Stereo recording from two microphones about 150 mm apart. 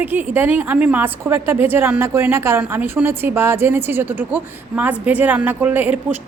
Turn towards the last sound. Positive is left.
turn(degrees=-10)  # may be behind; listen again after turning